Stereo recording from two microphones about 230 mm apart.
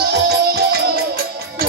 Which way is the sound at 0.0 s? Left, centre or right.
Right.